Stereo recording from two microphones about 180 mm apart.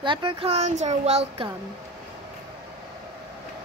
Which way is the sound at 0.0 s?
30° right (ahead or behind).